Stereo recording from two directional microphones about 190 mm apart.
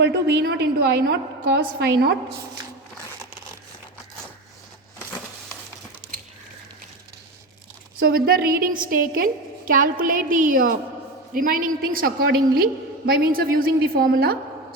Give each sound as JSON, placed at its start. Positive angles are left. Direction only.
{"t": 0.0, "sound": "a woman's voice", "side_deg": -65}
{"t": 7.9, "sound": "a woman's voice", "side_deg": -50}